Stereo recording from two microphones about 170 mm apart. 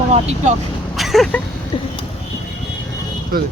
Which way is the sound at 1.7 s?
30° left (ahead or behind).